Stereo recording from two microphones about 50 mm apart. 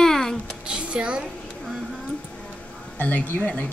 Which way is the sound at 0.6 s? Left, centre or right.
Centre.